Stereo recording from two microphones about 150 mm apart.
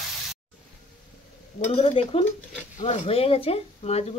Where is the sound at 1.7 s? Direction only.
40° left (ahead or behind).